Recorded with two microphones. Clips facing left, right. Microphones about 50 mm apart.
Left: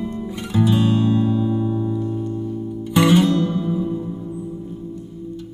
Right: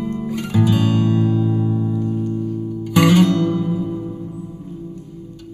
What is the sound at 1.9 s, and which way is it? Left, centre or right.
Music, centre.